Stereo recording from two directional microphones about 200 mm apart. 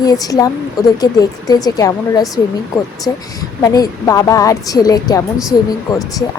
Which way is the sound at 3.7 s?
15° left (ahead or behind).